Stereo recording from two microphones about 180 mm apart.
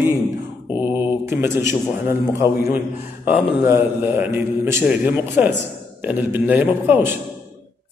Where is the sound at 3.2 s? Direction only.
10° right (ahead or behind).